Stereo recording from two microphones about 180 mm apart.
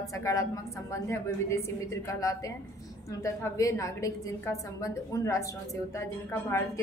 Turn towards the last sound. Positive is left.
turn(degrees=15)  # may be behind; listen again after turning